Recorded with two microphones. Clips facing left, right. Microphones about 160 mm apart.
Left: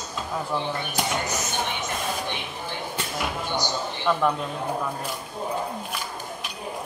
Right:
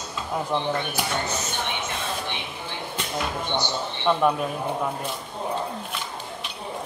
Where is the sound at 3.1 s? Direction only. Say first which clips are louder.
Right 2 dB; 5° left (ahead or behind).